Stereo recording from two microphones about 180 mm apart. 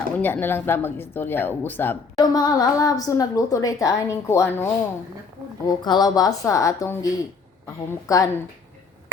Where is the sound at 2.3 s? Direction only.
20° left (ahead or behind).